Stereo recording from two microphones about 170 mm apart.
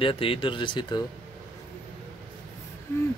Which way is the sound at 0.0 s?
30° left (ahead or behind).